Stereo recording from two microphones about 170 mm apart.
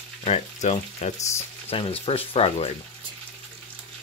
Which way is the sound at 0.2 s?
40° left (ahead or behind).